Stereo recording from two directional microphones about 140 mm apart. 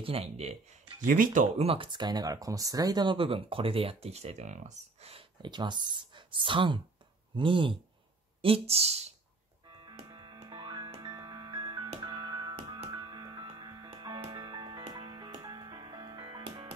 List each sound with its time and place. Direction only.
0.0 s speech: 45° right (ahead or behind)
1.0 s speech: 75° right (ahead or behind)
1.6 s speech: 40° right (ahead or behind)
5.4 s speech: 35° right (ahead or behind); by 9.1 s 50° right (ahead or behind)
9.7 s music: 35° right (ahead or behind)